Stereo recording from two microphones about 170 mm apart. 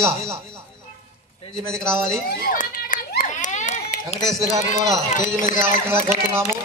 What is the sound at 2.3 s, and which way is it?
Children playing, 60° left (ahead or behind).